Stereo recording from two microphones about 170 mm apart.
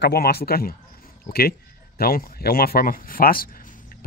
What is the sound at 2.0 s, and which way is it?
Speech, 60° left (ahead or behind).